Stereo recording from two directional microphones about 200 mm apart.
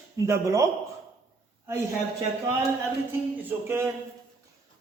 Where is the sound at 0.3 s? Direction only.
15° right (ahead or behind).